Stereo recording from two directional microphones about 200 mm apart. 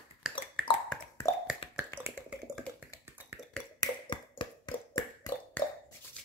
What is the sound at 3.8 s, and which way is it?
Finger snapping, 25° left (ahead or behind).